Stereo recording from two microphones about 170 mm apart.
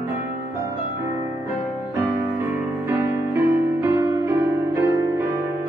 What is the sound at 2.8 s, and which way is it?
Music, 15° right (ahead or behind).